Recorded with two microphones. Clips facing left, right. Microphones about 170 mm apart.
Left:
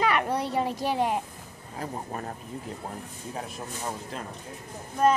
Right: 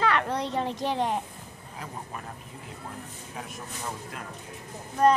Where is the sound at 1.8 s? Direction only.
40° left (ahead or behind).